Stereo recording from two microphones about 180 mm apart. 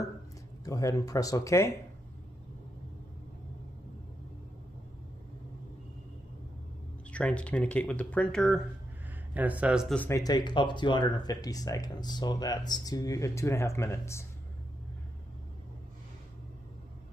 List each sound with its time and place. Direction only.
0.7 s speech: 20° left (ahead or behind)
7.1 s speech: 5° left (ahead or behind)
9.9 s speech: 15° left (ahead or behind)